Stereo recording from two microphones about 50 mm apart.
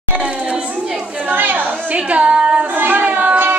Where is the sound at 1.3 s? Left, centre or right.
Right.